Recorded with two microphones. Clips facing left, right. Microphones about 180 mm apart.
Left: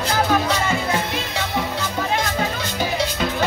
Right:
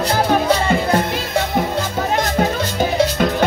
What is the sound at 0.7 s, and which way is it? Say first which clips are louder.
Music: right 5 dB; 45° right (ahead or behind).